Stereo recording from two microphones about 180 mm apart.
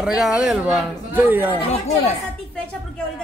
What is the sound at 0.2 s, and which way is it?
Speech, 5° right (ahead or behind).